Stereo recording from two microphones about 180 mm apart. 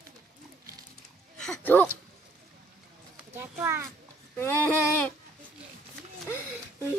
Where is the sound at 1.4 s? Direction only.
5° left (ahead or behind).